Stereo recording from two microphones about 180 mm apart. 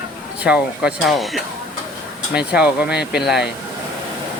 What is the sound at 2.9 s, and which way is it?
Speech, 65° left (ahead or behind).